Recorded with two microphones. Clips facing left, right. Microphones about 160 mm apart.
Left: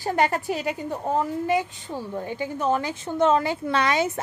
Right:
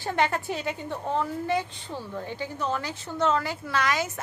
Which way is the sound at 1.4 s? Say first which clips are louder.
Left 4 dB; 15° left (ahead or behind).